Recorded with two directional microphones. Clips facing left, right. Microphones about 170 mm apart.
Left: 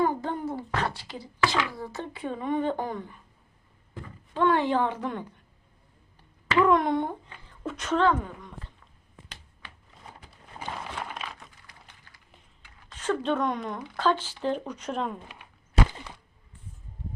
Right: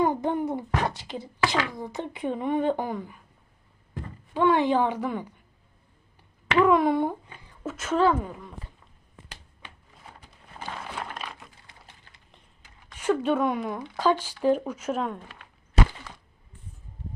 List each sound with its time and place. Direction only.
0.0 s a child's voice: 15° right (ahead or behind)
4.4 s speech: 15° right (ahead or behind)
6.6 s speech: 5° right (ahead or behind)
10.8 s a sound: centre (ahead or behind)
11.6 s a sound: 25° right (ahead or behind)
12.9 s speech: 10° right (ahead or behind)